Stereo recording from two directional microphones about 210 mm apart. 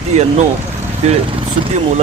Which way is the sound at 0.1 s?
35° right (ahead or behind).